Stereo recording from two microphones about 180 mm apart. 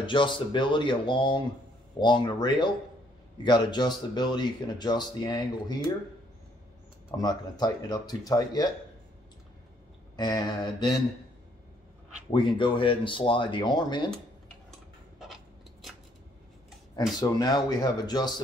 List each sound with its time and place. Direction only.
0.0 s speech: 25° left (ahead or behind)
7.1 s speech: 25° left (ahead or behind)
10.1 s speech: 25° left (ahead or behind)
12.3 s speech: 25° left (ahead or behind)
17.2 s speech: 25° left (ahead or behind)